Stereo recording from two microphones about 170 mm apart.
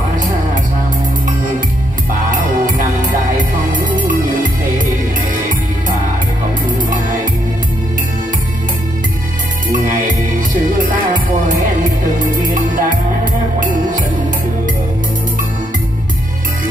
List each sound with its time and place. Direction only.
3.3 s music: 50° right (ahead or behind)
9.7 s music: 50° right (ahead or behind)